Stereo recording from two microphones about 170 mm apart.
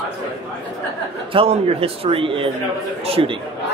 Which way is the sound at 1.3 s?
35° right (ahead or behind).